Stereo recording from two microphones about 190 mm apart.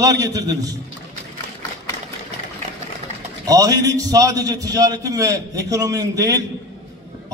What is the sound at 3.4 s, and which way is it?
A man's voice, 20° right (ahead or behind).